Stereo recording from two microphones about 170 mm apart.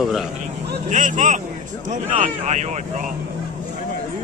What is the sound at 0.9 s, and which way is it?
Speech, 50° right (ahead or behind).